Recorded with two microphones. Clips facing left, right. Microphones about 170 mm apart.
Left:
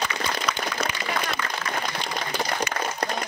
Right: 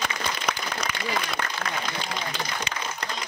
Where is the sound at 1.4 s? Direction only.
60° right (ahead or behind).